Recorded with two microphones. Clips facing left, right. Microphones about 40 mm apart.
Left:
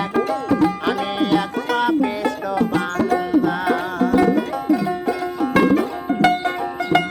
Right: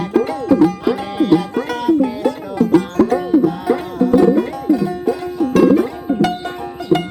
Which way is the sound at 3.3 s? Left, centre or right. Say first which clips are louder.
Right 3 dB; left.